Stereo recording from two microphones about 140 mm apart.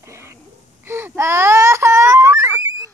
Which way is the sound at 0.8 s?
15° right (ahead or behind).